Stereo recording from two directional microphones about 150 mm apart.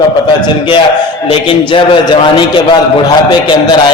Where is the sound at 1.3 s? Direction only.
35° left (ahead or behind).